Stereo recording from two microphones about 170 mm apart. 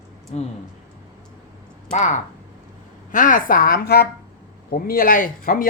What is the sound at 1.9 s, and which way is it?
A woman's voice, 45° left (ahead or behind).